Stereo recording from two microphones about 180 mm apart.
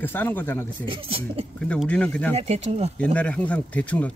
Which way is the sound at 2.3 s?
35° right (ahead or behind).